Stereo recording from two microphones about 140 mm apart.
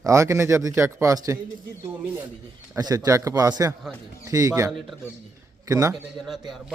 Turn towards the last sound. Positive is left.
turn(degrees=0)  # may be behind; listen again after turning